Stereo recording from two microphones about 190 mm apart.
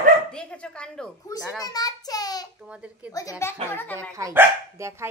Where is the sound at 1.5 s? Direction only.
20° left (ahead or behind).